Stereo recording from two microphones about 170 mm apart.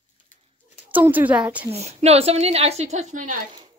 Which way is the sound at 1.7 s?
40° right (ahead or behind).